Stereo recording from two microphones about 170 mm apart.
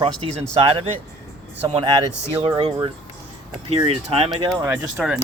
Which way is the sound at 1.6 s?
30° right (ahead or behind).